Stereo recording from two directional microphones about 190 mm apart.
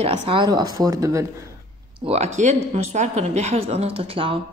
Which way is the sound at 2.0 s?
35° right (ahead or behind).